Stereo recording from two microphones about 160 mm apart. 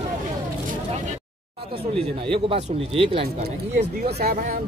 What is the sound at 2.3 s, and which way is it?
Speech, 35° right (ahead or behind).